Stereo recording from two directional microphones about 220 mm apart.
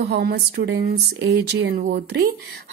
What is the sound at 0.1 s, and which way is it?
Speech, 45° right (ahead or behind).